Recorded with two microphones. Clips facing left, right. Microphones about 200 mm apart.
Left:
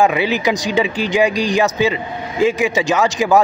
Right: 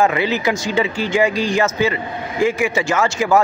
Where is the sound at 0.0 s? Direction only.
15° left (ahead or behind).